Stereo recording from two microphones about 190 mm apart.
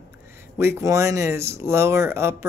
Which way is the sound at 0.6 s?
15° right (ahead or behind).